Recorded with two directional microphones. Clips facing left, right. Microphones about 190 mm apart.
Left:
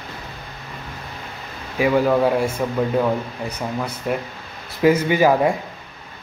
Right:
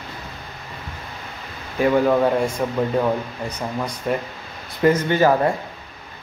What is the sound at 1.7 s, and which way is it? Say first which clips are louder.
Speech: even; 5° left (ahead or behind).